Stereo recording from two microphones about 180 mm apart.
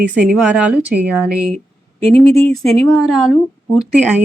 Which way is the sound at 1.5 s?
35° right (ahead or behind).